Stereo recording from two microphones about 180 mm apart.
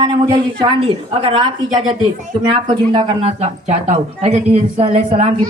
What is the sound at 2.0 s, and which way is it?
A man's voice, 25° right (ahead or behind).